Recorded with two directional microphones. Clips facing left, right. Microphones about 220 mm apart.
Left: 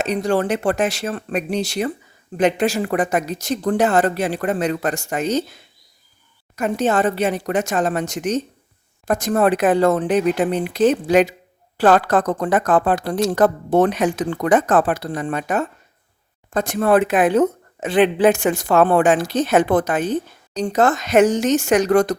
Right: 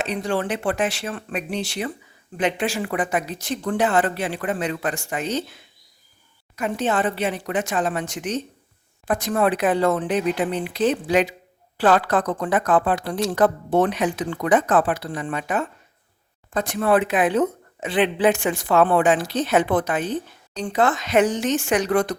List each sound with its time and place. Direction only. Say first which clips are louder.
0.0 s speech: left 5 dB; 40° left (ahead or behind)
6.6 s speech: left 4 dB; 45° left (ahead or behind)